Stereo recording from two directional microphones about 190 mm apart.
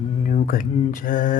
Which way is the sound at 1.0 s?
45° left (ahead or behind).